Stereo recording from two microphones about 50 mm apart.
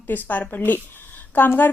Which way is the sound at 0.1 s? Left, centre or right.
Left.